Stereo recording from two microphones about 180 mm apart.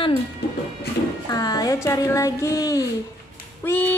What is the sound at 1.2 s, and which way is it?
Speech, 20° left (ahead or behind).